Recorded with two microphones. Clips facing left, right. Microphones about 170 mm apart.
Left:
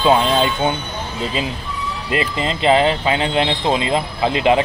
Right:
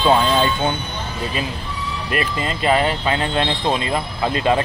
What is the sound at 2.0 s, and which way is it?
Speech, 20° left (ahead or behind).